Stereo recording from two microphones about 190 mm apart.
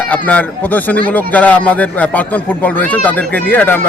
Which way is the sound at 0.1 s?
10° left (ahead or behind).